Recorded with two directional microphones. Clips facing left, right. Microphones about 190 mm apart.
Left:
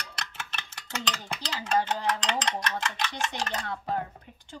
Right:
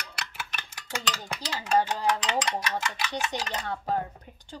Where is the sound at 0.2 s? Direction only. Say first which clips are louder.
Right 1 dB; 10° right (ahead or behind).